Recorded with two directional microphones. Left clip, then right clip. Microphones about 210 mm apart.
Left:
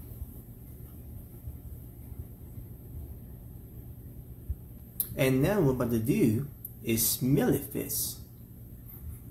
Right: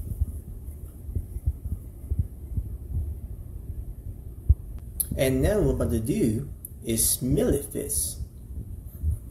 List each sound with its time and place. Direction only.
5.1 s speech: 10° left (ahead or behind)